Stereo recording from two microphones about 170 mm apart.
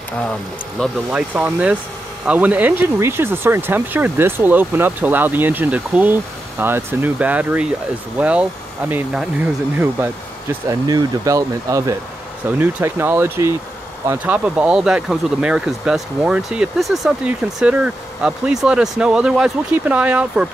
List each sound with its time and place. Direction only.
1.1 s speech: 10° right (ahead or behind)
10.7 s speech: 20° right (ahead or behind)